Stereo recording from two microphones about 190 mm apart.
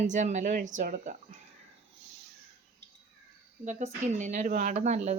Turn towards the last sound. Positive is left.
turn(degrees=-35)  # may be behind; listen again after turning